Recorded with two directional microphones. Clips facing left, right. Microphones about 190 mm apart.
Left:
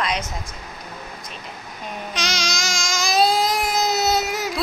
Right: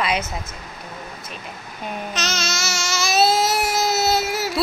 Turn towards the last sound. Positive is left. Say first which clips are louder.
# right 1 dB
turn(degrees=20)  # may be behind; listen again after turning